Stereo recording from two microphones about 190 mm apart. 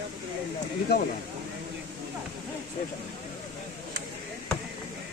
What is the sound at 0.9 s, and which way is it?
Speech, 60° left (ahead or behind).